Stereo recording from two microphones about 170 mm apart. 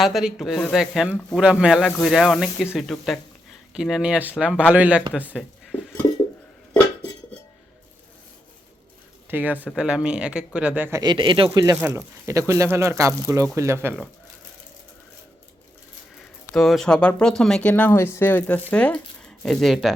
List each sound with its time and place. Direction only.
0.0 s speech: centre (ahead or behind)
5.3 s a sound: centre (ahead or behind)
9.3 s speech: 10° right (ahead or behind)
11.0 s speech: 30° right (ahead or behind)
11.6 s speech: 15° right (ahead or behind)
16.5 s speech: centre (ahead or behind)